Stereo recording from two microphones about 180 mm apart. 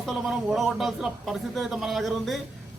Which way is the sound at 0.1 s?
Centre (ahead or behind).